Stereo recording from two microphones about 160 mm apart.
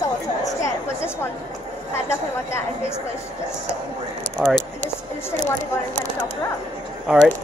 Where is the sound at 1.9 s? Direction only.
15° left (ahead or behind).